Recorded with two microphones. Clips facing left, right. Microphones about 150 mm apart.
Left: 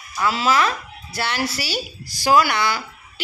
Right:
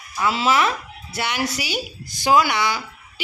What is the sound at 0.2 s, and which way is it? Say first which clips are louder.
A man's voice: even; 25° right (ahead or behind).